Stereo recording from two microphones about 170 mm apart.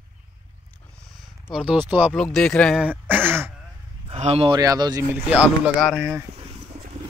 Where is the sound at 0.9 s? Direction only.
Centre (ahead or behind).